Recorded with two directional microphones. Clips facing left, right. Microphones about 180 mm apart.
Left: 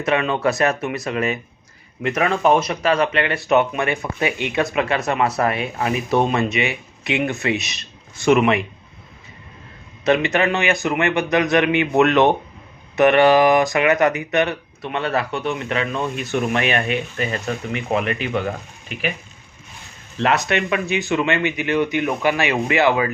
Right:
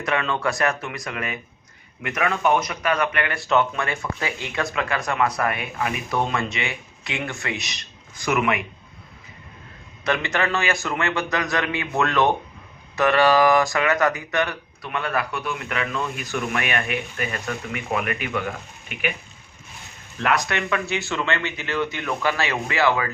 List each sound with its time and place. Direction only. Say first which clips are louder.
0.0 s speech: left 5 dB; 20° left (ahead or behind)
10.0 s speech: left 6 dB; 20° left (ahead or behind)
20.1 s speech: left 4 dB; 25° left (ahead or behind)